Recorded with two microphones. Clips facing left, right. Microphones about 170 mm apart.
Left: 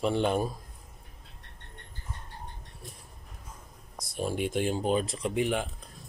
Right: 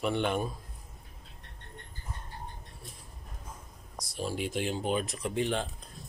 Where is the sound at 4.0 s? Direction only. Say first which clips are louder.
Left 3 dB; 55° left (ahead or behind); by 5.6 s 15° left (ahead or behind).